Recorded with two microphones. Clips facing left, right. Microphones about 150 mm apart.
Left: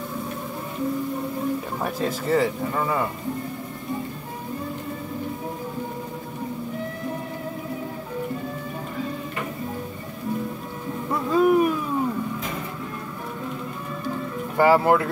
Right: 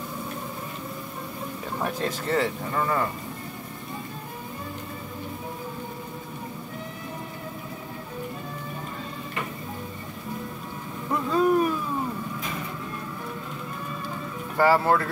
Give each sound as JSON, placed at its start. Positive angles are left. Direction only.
{"t": 1.8, "sound": "speech", "side_deg": 5}
{"t": 11.1, "sound": "vehicle", "side_deg": 5}
{"t": 14.6, "sound": "speech", "side_deg": 15}